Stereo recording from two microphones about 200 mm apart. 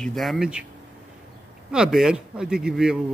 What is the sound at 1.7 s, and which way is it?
A man's voice, 5° right (ahead or behind).